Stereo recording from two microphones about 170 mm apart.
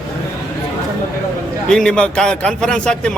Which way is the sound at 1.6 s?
5° left (ahead or behind).